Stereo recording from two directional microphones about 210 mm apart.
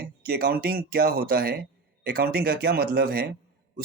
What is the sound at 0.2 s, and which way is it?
Speech, 45° right (ahead or behind).